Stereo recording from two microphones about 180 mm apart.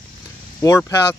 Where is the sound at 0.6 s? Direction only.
15° left (ahead or behind).